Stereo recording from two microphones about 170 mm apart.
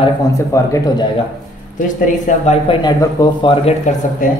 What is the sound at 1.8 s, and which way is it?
Speech, 50° left (ahead or behind).